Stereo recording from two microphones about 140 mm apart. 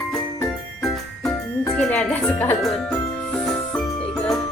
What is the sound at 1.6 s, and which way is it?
Music, 10° left (ahead or behind).